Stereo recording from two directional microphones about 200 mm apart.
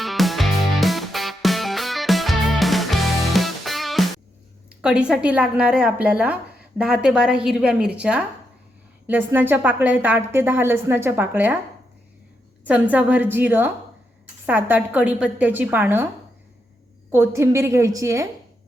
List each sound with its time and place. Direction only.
0.0 s music: centre (ahead or behind)
4.8 s a woman's voice: 5° right (ahead or behind)
12.6 s a woman's voice: 5° right (ahead or behind)
17.1 s a woman's voice: 15° right (ahead or behind)